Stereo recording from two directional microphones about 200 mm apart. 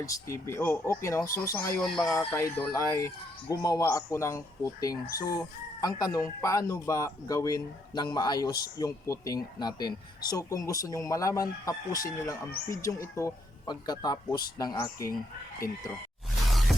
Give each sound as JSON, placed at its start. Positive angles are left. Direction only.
{"t": 0.0, "sound": "speech", "side_deg": 15}
{"t": 16.5, "sound": "music", "side_deg": 0}